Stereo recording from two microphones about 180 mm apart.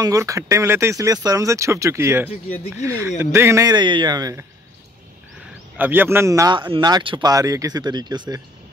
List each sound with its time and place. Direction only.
0.0 s speech: 20° right (ahead or behind)
5.8 s speech: 10° right (ahead or behind)